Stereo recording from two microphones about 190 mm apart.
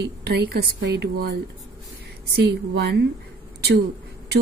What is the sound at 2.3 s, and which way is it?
Speech, 65° right (ahead or behind).